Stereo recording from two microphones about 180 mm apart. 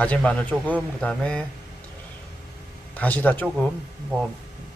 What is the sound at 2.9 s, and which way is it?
Speech, 10° left (ahead or behind).